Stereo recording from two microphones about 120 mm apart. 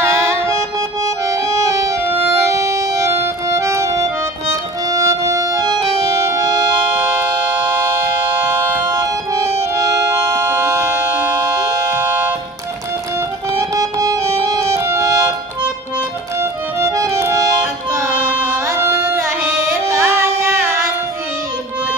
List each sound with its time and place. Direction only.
0.0 s music: 20° right (ahead or behind)
8.8 s music: 30° right (ahead or behind)
13.5 s music: 30° right (ahead or behind)
16.3 s music: 25° right (ahead or behind)
18.7 s music: 25° right (ahead or behind)